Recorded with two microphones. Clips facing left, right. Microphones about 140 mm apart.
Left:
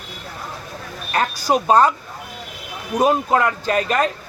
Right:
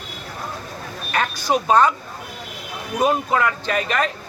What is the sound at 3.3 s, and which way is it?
Speech, 35° left (ahead or behind).